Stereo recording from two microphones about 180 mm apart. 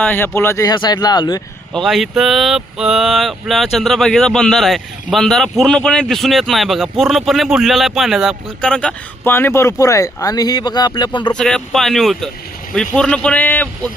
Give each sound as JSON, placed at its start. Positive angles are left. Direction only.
{"t": 0.0, "sound": "speech", "side_deg": 10}
{"t": 1.7, "sound": "speech", "side_deg": 0}
{"t": 11.3, "sound": "speech", "side_deg": 5}